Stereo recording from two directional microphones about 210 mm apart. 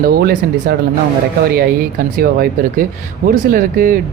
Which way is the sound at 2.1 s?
45° right (ahead or behind).